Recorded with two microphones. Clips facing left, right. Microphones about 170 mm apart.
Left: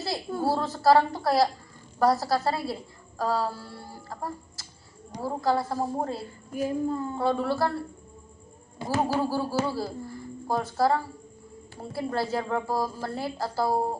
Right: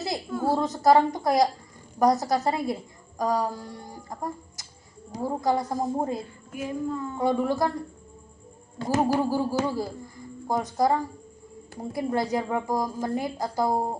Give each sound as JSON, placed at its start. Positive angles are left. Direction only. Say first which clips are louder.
{"t": 0.4, "sound": "a woman's voice", "louder": "right 1 dB", "side_deg": -20}
{"t": 6.5, "sound": "speech", "louder": "left 3 dB", "side_deg": 35}
{"t": 7.2, "sound": "a woman's voice", "louder": "right 2 dB", "side_deg": -15}
{"t": 8.9, "sound": "a woman's voice", "louder": "right 3 dB", "side_deg": -15}